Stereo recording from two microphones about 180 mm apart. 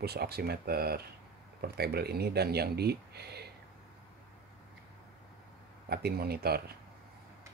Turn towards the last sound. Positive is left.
turn(degrees=-60)  # may be behind; listen again after turning